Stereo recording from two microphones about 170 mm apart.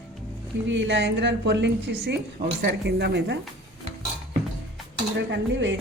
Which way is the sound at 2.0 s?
75° right (ahead or behind).